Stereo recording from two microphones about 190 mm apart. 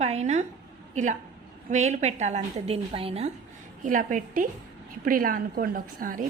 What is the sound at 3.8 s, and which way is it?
A woman's voice, 45° right (ahead or behind).